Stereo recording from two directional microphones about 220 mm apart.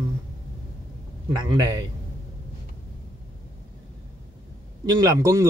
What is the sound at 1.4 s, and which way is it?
Speech, 20° right (ahead or behind).